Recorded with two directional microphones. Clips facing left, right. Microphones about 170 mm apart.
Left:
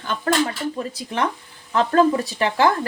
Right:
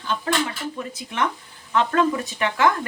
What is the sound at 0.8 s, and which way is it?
Speech, 35° left (ahead or behind).